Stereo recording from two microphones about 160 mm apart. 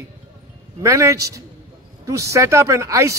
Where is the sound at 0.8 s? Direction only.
20° right (ahead or behind).